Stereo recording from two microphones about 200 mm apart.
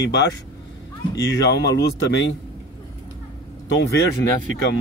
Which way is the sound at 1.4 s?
60° left (ahead or behind).